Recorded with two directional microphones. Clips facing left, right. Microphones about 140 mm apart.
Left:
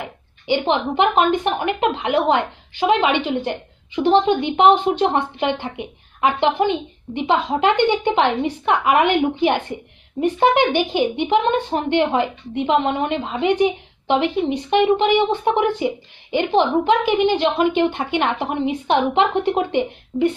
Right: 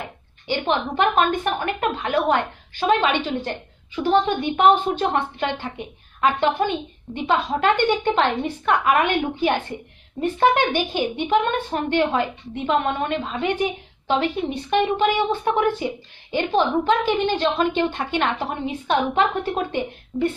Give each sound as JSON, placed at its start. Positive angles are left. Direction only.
{"t": 0.4, "sound": "a woman's voice", "side_deg": 15}